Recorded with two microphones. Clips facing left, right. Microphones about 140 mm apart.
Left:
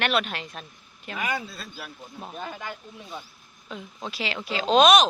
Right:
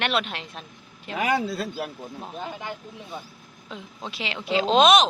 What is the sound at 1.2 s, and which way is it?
Speech, 90° right.